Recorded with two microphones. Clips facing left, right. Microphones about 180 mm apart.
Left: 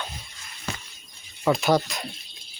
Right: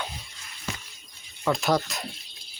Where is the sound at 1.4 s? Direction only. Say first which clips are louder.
Left 3 dB; centre (ahead or behind).